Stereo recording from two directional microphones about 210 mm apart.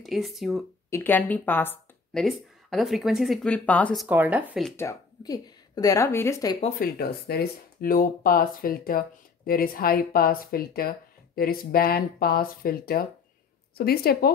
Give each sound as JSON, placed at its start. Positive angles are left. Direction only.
{"t": 0.0, "sound": "speech", "side_deg": 0}
{"t": 0.8, "sound": "speech", "side_deg": 10}
{"t": 4.6, "sound": "speech", "side_deg": 15}
{"t": 6.8, "sound": "speech", "side_deg": 45}